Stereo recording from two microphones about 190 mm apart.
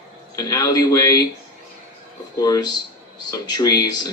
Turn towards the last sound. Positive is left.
turn(degrees=20)  # may be behind; listen again after turning